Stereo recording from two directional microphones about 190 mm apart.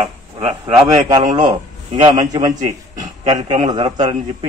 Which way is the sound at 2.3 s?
20° right (ahead or behind).